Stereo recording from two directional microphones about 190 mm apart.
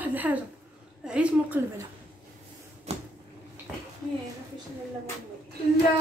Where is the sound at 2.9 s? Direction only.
35° right (ahead or behind).